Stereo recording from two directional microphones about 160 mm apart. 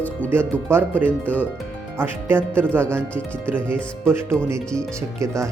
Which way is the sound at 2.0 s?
15° right (ahead or behind).